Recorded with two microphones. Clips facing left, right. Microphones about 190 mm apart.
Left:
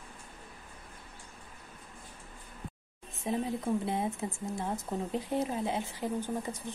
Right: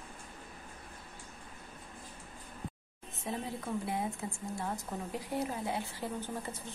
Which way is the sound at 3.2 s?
20° left (ahead or behind).